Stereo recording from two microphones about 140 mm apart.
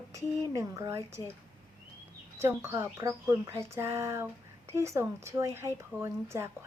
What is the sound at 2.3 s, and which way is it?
Speech, 20° right (ahead or behind).